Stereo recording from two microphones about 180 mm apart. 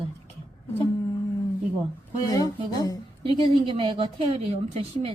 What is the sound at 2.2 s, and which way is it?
Speech, 20° left (ahead or behind).